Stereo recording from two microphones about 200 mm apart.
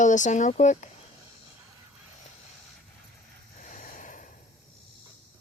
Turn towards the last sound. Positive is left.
turn(degrees=40)  # may be behind; listen again after turning